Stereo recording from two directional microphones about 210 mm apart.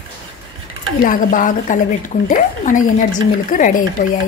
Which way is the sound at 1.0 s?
40° left (ahead or behind).